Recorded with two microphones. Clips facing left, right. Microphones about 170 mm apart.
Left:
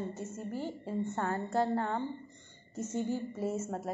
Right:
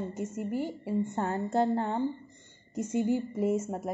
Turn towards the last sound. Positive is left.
turn(degrees=-15)  # may be behind; listen again after turning